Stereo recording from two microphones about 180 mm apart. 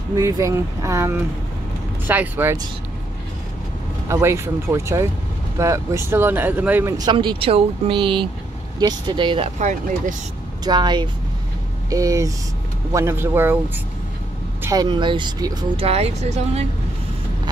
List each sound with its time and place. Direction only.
0.1 s speech: 15° right (ahead or behind)
4.1 s speech: 15° right (ahead or behind)
9.6 s speech: 45° right (ahead or behind)
10.6 s speech: 25° right (ahead or behind)
14.6 s speech: 20° right (ahead or behind); by 16.6 s 35° right (ahead or behind)